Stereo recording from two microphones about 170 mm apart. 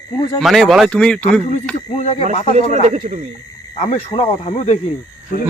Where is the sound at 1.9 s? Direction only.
40° left (ahead or behind).